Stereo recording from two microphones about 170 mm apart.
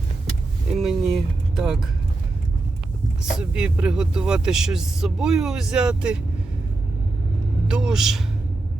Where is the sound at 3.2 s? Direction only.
5° right (ahead or behind).